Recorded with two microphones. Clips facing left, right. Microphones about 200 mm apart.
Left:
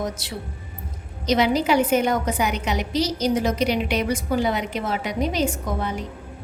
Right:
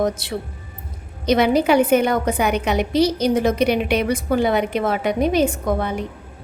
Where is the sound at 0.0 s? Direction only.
60° right (ahead or behind).